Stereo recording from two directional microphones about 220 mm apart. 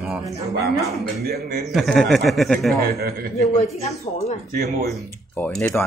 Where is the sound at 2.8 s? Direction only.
45° right (ahead or behind).